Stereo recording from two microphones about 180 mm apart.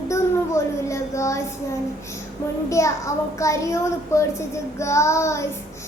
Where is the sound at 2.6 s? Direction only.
15° left (ahead or behind).